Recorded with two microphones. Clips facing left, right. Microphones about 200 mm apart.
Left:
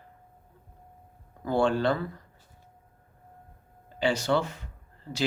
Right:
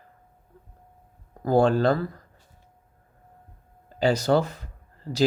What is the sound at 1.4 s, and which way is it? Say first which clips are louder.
Speech: right 5 dB; 40° right (ahead or behind).